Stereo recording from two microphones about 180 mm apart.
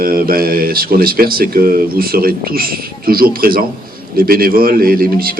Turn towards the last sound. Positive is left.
turn(degrees=-55)  # may be behind; listen again after turning